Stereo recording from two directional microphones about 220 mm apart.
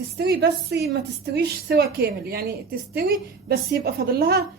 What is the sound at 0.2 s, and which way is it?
Speech, 45° right (ahead or behind).